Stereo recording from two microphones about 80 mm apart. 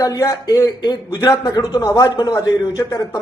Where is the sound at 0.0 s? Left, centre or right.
Left.